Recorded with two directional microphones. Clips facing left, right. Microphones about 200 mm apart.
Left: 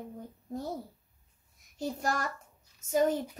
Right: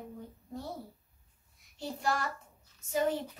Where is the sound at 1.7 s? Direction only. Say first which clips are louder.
Left 1 dB; 45° left (ahead or behind).